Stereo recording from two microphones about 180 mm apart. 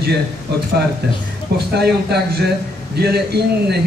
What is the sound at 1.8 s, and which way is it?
A man's voice, 65° right (ahead or behind).